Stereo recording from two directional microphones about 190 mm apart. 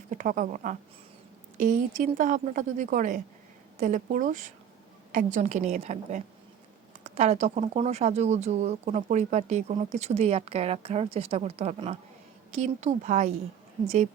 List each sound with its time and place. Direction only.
0.1 s speech: 40° right (ahead or behind)